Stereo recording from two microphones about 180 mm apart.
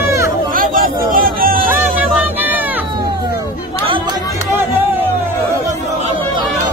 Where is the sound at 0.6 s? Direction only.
50° right (ahead or behind).